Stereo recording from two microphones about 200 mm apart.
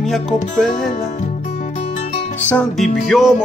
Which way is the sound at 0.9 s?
35° left (ahead or behind).